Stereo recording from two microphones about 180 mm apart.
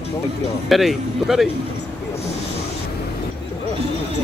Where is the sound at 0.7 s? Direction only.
Centre (ahead or behind).